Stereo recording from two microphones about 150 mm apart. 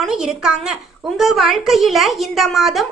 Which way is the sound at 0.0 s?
5° right (ahead or behind).